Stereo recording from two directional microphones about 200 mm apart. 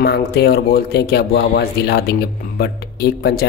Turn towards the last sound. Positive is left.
turn(degrees=50)  # may be behind; listen again after turning